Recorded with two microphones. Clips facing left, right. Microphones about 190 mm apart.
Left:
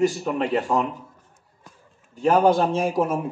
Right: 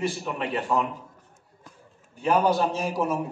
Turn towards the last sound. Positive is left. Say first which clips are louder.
# left 4 dB
turn(degrees=50)  # may be behind; listen again after turning